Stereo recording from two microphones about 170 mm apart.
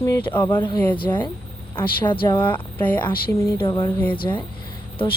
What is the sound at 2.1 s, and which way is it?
Speech, 30° left (ahead or behind).